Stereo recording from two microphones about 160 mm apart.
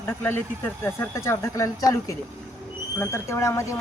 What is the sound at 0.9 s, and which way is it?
Speech, 15° left (ahead or behind).